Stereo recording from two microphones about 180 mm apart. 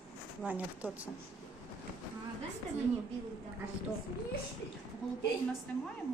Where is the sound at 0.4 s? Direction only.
10° right (ahead or behind).